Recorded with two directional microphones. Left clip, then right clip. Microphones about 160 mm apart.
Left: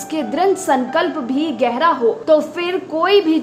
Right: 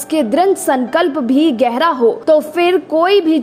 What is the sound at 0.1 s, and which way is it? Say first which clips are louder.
A woman's voice: right 4 dB; 40° right (ahead or behind).